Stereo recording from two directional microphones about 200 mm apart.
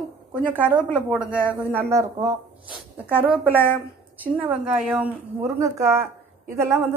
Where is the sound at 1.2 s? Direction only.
5° right (ahead or behind).